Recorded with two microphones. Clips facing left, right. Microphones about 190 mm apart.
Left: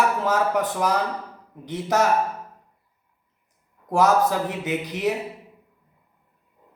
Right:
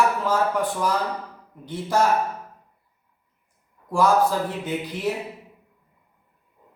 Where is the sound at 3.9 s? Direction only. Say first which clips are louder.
Even; 20° left (ahead or behind).